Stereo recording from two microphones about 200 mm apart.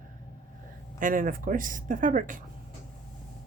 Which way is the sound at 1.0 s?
40° right (ahead or behind).